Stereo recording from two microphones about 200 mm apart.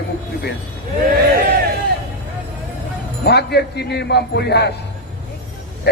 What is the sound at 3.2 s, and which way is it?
A man's voice, 55° left (ahead or behind).